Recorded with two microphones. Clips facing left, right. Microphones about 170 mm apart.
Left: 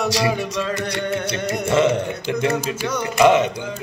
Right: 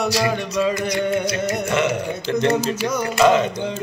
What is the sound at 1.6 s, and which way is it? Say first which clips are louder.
Music: left 6 dB; 30° left (ahead or behind).